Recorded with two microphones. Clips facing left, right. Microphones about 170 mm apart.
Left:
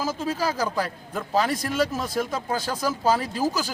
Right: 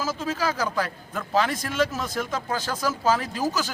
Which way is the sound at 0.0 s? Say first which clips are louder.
Left 1 dB; 10° left (ahead or behind).